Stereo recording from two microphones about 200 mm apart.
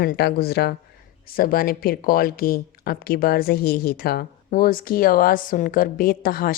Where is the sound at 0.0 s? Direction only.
50° left (ahead or behind).